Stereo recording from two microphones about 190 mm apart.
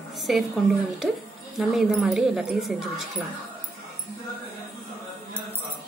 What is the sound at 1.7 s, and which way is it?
Speech, centre (ahead or behind).